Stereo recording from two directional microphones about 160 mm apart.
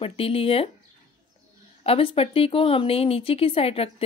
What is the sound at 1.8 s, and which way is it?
Speech, 35° left (ahead or behind).